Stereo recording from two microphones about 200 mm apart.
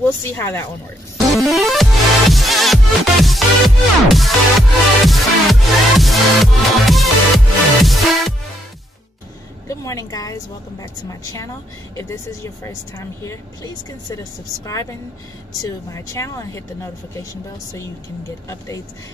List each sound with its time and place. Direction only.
0.4 s a woman's voice: 15° left (ahead or behind)
1.3 s music: centre (ahead or behind)
9.7 s a woman's voice: 15° left (ahead or behind)
14.7 s a woman's voice: 15° left (ahead or behind)